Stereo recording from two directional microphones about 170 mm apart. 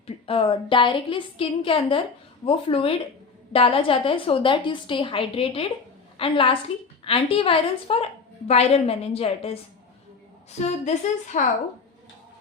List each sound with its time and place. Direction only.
0.3 s a woman's voice: 30° left (ahead or behind)
10.8 s a woman's voice: 45° left (ahead or behind)